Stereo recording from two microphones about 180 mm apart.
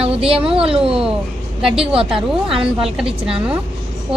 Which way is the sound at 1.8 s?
30° right (ahead or behind).